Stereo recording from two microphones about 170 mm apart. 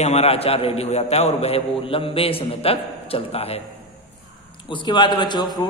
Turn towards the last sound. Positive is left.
turn(degrees=25)  # may be behind; listen again after turning